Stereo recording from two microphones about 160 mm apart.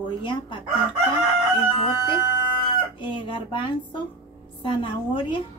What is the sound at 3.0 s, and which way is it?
Speech, 30° left (ahead or behind).